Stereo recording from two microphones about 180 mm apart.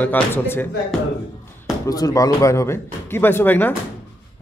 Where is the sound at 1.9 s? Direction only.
20° left (ahead or behind).